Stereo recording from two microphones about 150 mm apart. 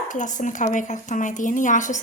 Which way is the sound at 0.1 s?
55° left (ahead or behind).